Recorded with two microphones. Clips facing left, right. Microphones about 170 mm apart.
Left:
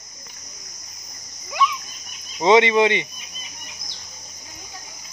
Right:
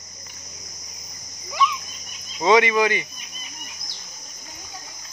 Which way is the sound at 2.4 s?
25° left (ahead or behind).